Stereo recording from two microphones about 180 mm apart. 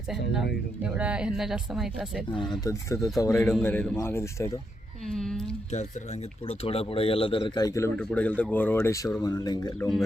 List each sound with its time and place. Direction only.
0.8 s speech: 5° right (ahead or behind)
2.5 s speech: 20° left (ahead or behind)
5.1 s speech: 5° left (ahead or behind)
6.5 s speech: 35° left (ahead or behind)
7.9 s speech: 5° left (ahead or behind)